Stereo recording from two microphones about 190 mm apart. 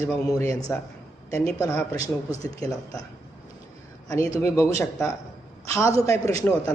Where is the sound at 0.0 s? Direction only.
15° left (ahead or behind).